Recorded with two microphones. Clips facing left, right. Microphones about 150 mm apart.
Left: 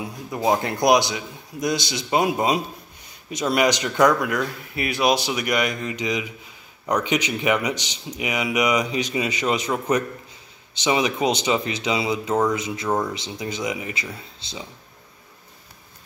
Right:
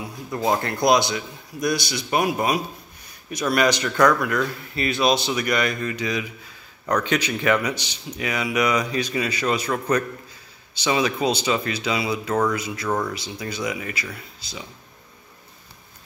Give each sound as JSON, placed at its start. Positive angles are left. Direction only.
{"t": 0.3, "sound": "speech", "side_deg": 15}